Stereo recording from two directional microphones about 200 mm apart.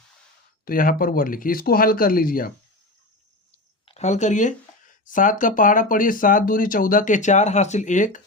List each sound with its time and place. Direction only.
0.6 s speech: 45° left (ahead or behind)
3.8 s speech: 35° left (ahead or behind)